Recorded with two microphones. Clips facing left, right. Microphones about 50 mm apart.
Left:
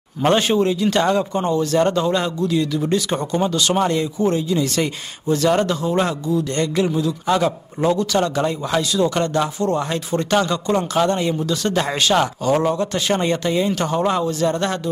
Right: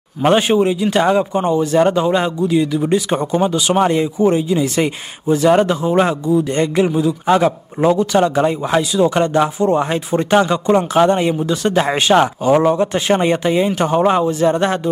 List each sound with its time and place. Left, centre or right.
0.2 s speech: centre